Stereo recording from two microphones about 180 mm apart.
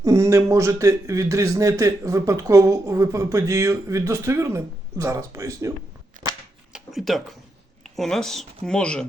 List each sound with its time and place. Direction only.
0.0 s a man's voice: 15° right (ahead or behind)
6.7 s speech: centre (ahead or behind)